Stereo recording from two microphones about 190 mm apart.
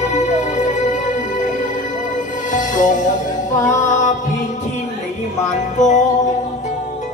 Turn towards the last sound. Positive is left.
turn(degrees=40)  # may be behind; listen again after turning